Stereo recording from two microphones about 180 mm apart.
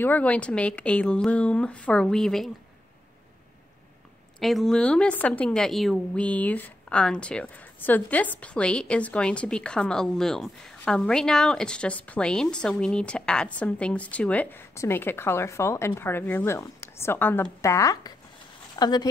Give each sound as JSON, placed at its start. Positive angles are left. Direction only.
{"t": 0.0, "sound": "speech", "side_deg": 10}
{"t": 4.4, "sound": "speech", "side_deg": 0}